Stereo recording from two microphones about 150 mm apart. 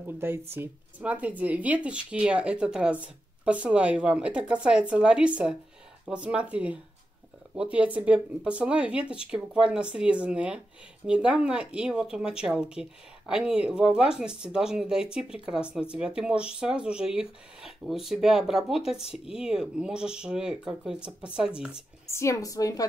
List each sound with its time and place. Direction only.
0.0 s speech: 15° right (ahead or behind)
22.0 s a woman's voice: 20° left (ahead or behind)